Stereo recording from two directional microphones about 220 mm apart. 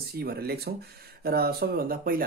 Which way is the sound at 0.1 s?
45° right (ahead or behind).